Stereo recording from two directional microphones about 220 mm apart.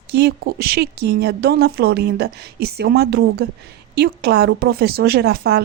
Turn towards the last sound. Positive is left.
turn(degrees=-45)  # may be behind; listen again after turning